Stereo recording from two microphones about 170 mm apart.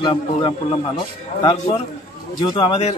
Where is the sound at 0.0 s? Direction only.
30° left (ahead or behind).